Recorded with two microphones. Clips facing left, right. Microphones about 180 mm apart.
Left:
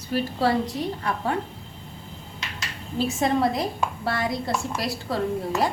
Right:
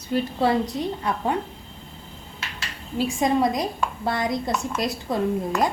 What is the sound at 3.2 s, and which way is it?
A woman's voice, 15° right (ahead or behind).